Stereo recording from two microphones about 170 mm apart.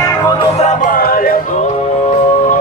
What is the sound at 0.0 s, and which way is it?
Music, 20° left (ahead or behind).